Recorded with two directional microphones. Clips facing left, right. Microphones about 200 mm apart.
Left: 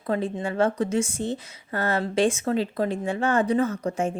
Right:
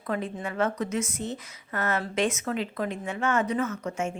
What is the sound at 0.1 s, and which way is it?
A woman's voice, 30° left (ahead or behind).